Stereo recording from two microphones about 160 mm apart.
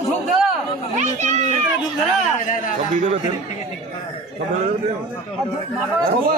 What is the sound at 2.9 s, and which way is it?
Speech, 50° right (ahead or behind).